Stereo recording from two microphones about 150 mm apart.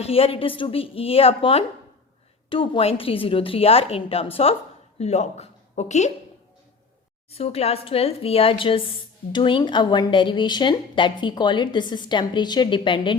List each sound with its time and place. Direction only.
0.0 s a woman's voice: 40° left (ahead or behind)
7.3 s a woman's voice: 40° left (ahead or behind)